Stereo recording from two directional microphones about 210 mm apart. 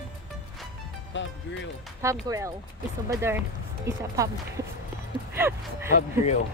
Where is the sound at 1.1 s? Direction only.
60° left (ahead or behind).